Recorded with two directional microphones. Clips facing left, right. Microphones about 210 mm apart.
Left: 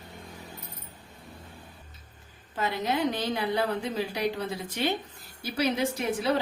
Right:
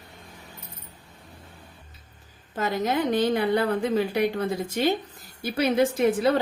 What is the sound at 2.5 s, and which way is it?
A woman's voice, 45° right (ahead or behind).